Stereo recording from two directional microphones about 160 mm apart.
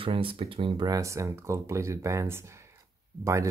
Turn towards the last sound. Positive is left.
turn(degrees=-20)  # may be behind; listen again after turning